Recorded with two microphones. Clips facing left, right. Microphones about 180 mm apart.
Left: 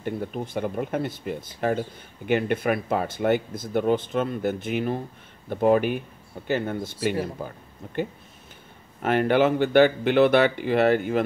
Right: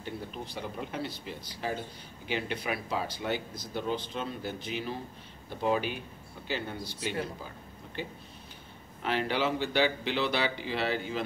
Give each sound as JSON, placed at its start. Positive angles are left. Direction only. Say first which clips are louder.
{"t": 0.0, "sound": "speech", "louder": "left 9 dB", "side_deg": 55}